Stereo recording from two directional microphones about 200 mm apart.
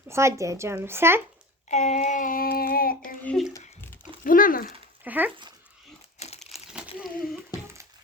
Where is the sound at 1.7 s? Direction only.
35° left (ahead or behind).